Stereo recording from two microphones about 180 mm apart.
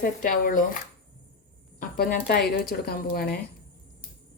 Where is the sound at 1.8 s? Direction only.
55° left (ahead or behind).